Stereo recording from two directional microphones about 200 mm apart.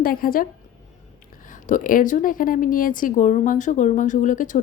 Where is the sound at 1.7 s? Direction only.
45° left (ahead or behind).